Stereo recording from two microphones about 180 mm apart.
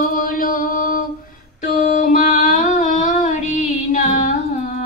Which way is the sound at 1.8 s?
45° left (ahead or behind).